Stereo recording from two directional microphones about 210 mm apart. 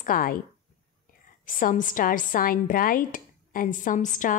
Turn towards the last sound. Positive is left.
turn(degrees=35)  # may be behind; listen again after turning